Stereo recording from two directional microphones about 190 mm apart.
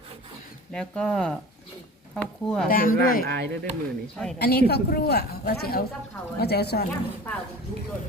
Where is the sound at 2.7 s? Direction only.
50° left (ahead or behind).